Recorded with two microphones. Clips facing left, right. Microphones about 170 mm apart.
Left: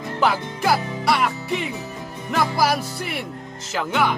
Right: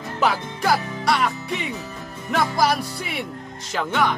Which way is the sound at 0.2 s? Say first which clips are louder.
Left 1 dB; centre (ahead or behind).